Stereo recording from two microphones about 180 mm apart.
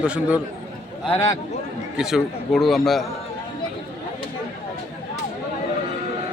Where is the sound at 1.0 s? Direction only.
30° left (ahead or behind).